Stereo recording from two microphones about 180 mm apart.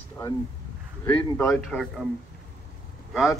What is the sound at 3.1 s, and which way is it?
Speech, centre (ahead or behind).